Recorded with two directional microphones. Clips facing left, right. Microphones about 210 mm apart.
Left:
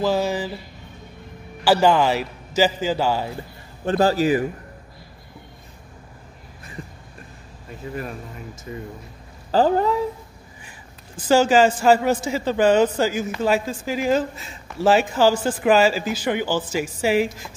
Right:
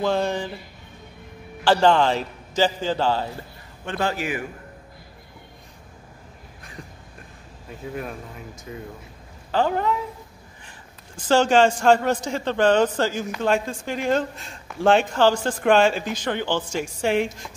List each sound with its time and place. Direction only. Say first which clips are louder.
0.0 s a man's voice: left 2 dB; 5° left (ahead or behind)
1.6 s a man's voice: left 1 dB; 10° left (ahead or behind)
3.8 s a man's voice: left 8 dB; 35° left (ahead or behind)
7.8 s a man's voice: left 1 dB; centre (ahead or behind)
9.5 s a man's voice: left 4 dB; 35° left (ahead or behind)
11.1 s a man's voice: left 2 dB; 5° left (ahead or behind)